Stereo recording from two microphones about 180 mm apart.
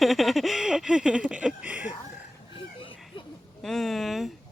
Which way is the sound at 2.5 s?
30° left (ahead or behind).